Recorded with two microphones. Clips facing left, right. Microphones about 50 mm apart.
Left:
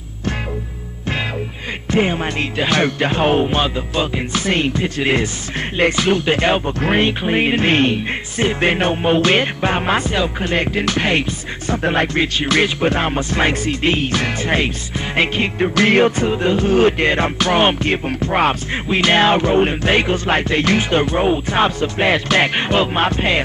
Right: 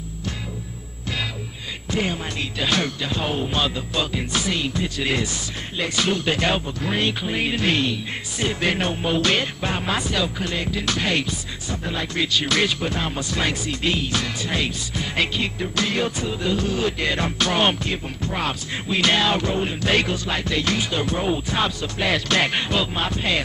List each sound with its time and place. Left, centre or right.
1.9 s music: left
2.7 s music: left
3.4 s music: left
4.5 s music: left
10.5 s music: left
11.7 s music: left
12.2 s music: left
15.8 s music: left
17.8 s music: left
19.9 s music: left
20.2 s music: left